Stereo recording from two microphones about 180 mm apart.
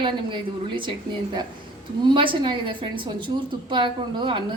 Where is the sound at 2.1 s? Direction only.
25° right (ahead or behind).